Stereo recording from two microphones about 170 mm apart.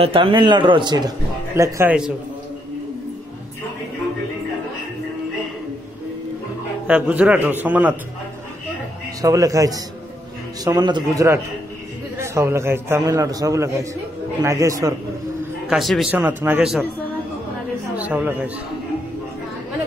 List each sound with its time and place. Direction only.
0.0 s a man's voice: 30° right (ahead or behind)
6.9 s a man's voice: 5° right (ahead or behind)
9.2 s a man's voice: 20° right (ahead or behind)
15.7 s a man's voice: centre (ahead or behind)
16.2 s a man's voice: 10° right (ahead or behind)
17.9 s speech: 10° right (ahead or behind)